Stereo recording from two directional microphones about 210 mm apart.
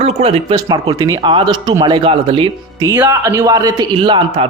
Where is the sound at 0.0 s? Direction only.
30° right (ahead or behind).